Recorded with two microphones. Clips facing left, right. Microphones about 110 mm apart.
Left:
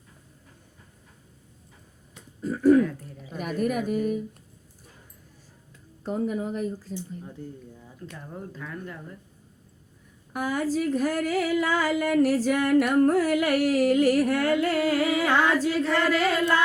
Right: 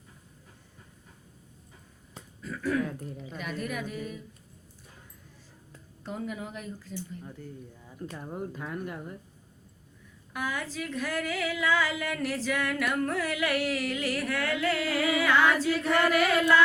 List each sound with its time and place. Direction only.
2.4 s throat clearing: 40° left (ahead or behind)
3.3 s a sound: 50° left (ahead or behind)
6.0 s speech: 40° left (ahead or behind)
8.0 s speech: 25° right (ahead or behind)
10.3 s a sound: 45° left (ahead or behind)
15.8 s speech: 15° right (ahead or behind)